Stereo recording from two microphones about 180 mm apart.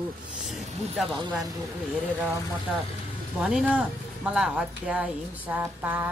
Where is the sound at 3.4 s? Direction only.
5° right (ahead or behind).